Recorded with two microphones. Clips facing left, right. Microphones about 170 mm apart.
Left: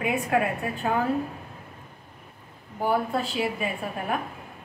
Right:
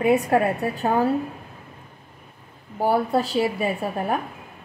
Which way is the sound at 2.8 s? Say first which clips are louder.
Right 4 dB; 35° right (ahead or behind).